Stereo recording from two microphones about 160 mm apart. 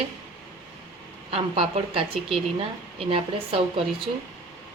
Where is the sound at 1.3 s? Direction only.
35° right (ahead or behind).